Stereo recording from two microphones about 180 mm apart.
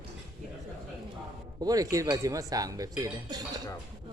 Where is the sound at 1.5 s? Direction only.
20° right (ahead or behind).